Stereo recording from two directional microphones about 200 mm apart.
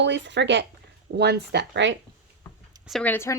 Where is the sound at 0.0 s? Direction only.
60° right (ahead or behind).